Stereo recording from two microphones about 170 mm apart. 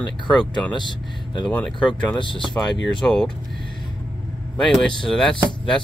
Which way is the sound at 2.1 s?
30° left (ahead or behind).